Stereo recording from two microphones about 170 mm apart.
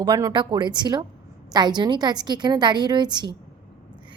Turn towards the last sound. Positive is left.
turn(degrees=-25)  # may be behind; listen again after turning